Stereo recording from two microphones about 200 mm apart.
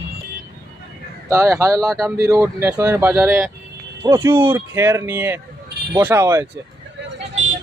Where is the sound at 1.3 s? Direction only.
15° right (ahead or behind).